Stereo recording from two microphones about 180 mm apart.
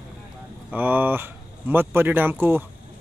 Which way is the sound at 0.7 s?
10° right (ahead or behind).